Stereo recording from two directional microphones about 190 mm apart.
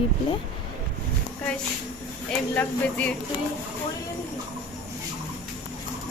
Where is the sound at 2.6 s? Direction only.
5° left (ahead or behind).